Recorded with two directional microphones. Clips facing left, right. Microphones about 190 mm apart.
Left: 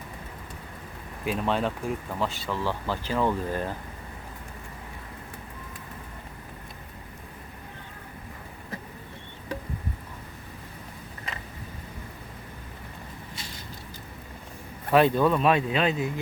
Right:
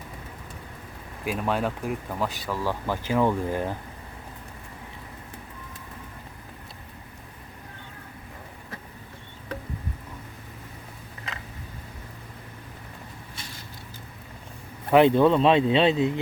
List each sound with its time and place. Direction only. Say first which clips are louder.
1.2 s speech: even; 5° right (ahead or behind)
14.8 s speech: right 3 dB; 20° right (ahead or behind)